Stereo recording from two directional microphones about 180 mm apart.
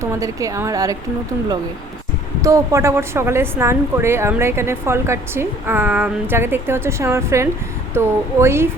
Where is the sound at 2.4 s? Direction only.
15° right (ahead or behind).